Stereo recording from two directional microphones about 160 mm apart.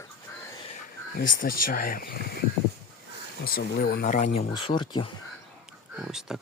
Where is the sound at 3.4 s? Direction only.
70° left (ahead or behind).